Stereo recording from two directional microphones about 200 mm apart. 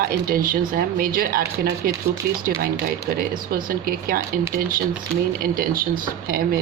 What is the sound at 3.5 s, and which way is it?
Speech, 45° right (ahead or behind).